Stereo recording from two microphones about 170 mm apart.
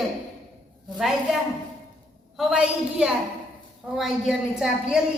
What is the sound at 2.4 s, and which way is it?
A man's voice, 5° right (ahead or behind).